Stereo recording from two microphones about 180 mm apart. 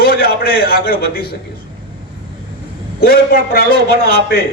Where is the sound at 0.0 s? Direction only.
55° left (ahead or behind).